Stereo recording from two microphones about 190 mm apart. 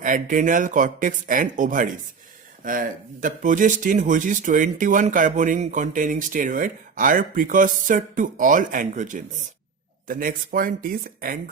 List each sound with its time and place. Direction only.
0.0 s speech: 45° right (ahead or behind)